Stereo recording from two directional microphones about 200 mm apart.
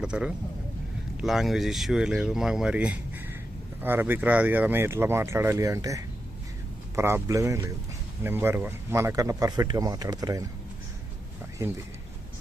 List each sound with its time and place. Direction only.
0.0 s speech: 5° right (ahead or behind)
11.6 s speech: 15° right (ahead or behind)